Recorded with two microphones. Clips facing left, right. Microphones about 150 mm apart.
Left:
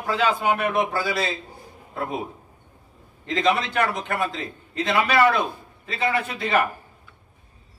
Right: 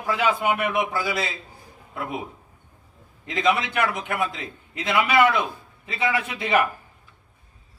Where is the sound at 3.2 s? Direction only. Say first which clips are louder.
Left 1 dB; 10° right (ahead or behind).